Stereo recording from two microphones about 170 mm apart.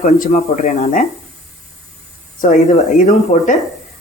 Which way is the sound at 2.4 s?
45° left (ahead or behind).